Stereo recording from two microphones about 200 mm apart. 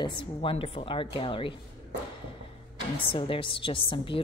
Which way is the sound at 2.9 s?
25° left (ahead or behind).